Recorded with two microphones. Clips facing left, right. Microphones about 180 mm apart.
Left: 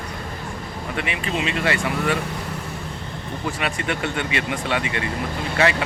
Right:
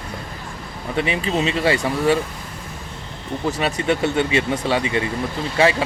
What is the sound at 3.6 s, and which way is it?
Speech, 35° right (ahead or behind).